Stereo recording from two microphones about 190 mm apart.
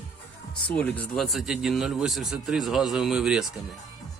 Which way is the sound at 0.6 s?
5° left (ahead or behind).